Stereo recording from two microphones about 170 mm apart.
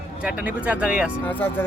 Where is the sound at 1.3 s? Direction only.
10° left (ahead or behind).